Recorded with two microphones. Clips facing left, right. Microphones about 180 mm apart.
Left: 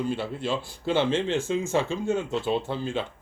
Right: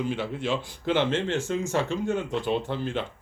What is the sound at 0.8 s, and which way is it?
Speech, 10° left (ahead or behind).